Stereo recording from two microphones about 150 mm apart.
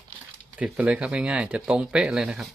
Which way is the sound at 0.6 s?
10° right (ahead or behind).